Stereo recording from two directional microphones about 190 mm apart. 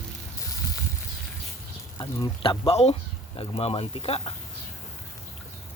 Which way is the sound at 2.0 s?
25° left (ahead or behind).